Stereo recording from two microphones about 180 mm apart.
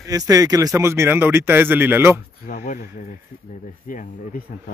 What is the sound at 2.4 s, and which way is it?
Speech, 45° left (ahead or behind).